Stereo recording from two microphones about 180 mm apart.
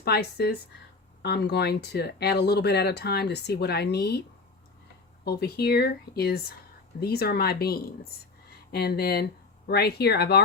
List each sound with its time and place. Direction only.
0.0 s speech: 65° left (ahead or behind)
5.2 s speech: 65° left (ahead or behind)